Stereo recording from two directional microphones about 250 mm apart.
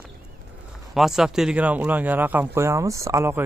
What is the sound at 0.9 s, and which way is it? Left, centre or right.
Speech, centre.